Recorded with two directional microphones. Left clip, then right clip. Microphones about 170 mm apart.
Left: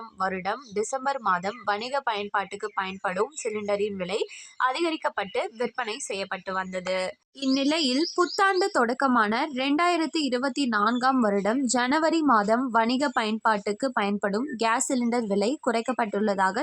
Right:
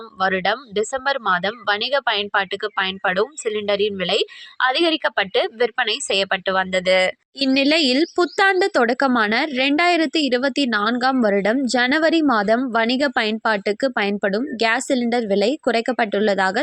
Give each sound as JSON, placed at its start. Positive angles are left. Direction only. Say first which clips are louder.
{"t": 0.2, "sound": "speech", "louder": "right 9 dB", "side_deg": -20}